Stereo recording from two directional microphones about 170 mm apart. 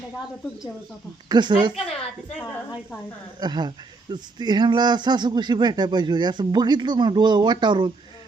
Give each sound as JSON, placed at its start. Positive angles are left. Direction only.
{"t": 1.3, "sound": "speech", "side_deg": -25}
{"t": 3.4, "sound": "speech", "side_deg": -25}